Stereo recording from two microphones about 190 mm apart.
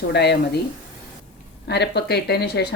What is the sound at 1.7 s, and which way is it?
Speech, 60° left (ahead or behind).